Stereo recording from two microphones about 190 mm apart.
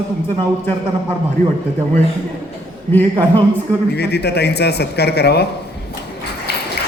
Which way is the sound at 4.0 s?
60° left (ahead or behind).